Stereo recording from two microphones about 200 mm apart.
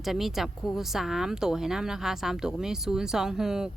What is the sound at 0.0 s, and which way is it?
Speech, centre (ahead or behind).